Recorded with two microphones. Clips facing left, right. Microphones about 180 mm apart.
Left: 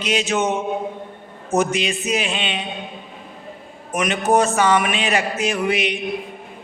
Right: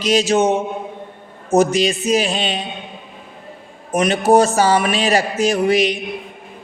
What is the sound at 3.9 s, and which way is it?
Speech, 35° right (ahead or behind).